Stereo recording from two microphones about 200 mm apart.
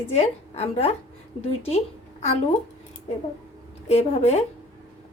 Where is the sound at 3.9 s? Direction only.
30° left (ahead or behind).